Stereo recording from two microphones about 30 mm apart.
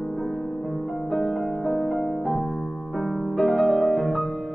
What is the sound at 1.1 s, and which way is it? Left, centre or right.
Music, centre.